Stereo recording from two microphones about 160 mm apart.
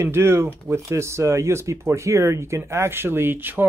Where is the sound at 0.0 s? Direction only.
15° right (ahead or behind).